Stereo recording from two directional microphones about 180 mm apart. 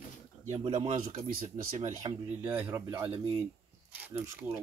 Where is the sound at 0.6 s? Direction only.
30° right (ahead or behind).